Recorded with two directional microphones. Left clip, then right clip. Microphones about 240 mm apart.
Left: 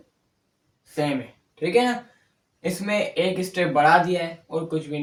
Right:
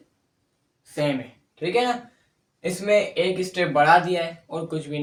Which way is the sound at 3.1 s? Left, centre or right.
Centre.